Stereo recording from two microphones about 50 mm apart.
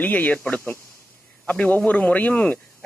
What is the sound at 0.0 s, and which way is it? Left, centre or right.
Speech, left.